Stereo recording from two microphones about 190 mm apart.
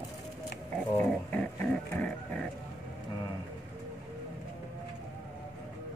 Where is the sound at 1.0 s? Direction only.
10° left (ahead or behind).